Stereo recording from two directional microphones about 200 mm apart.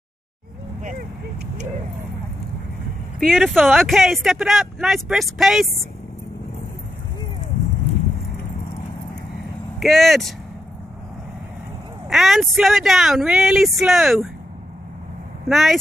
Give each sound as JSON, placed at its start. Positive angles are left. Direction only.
{"t": 3.2, "sound": "speech", "side_deg": 5}
{"t": 9.8, "sound": "speech", "side_deg": 0}
{"t": 12.1, "sound": "speech", "side_deg": 0}
{"t": 15.4, "sound": "speech", "side_deg": 0}